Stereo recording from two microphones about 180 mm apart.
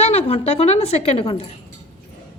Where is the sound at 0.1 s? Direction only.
35° left (ahead or behind).